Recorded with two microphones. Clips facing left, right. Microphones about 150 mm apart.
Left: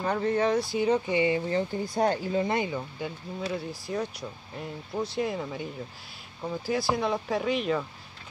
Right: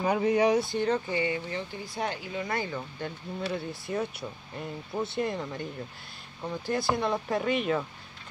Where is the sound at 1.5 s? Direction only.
40° left (ahead or behind).